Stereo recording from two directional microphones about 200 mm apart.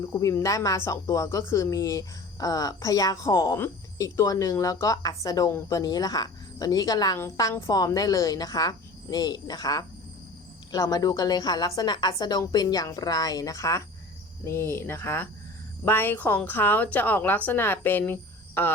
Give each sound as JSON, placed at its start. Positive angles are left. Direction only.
{"t": 0.0, "sound": "a woman's voice", "side_deg": 15}